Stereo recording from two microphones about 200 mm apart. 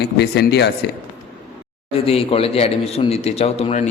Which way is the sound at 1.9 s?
30° left (ahead or behind).